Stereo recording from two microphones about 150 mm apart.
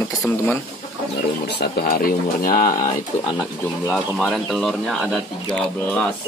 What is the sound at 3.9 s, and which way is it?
Speech, 5° left (ahead or behind).